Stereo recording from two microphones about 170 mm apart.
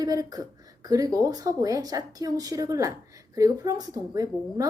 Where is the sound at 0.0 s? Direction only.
20° right (ahead or behind).